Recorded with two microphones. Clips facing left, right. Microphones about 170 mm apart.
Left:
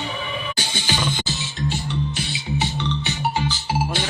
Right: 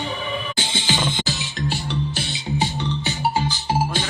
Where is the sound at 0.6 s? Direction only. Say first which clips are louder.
Right 1 dB; 20° right (ahead or behind).